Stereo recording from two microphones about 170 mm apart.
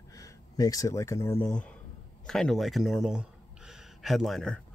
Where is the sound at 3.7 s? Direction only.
Centre (ahead or behind).